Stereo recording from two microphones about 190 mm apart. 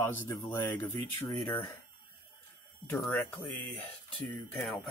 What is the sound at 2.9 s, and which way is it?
Speech, 5° left (ahead or behind).